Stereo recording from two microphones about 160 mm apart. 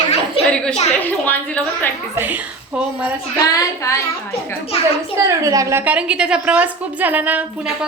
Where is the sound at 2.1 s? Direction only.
10° right (ahead or behind).